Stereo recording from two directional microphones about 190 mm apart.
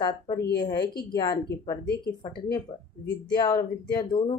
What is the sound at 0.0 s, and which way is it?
Speech, 25° left (ahead or behind).